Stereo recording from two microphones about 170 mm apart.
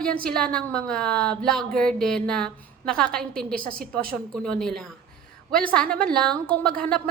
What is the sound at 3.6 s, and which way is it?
Speech, 55° right (ahead or behind).